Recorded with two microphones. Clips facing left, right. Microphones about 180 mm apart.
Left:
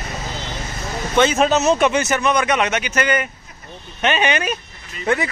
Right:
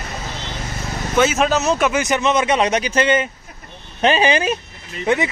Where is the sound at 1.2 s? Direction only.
5° right (ahead or behind).